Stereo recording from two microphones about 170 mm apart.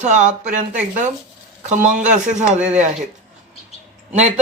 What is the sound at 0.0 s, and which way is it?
Speech, 45° right (ahead or behind).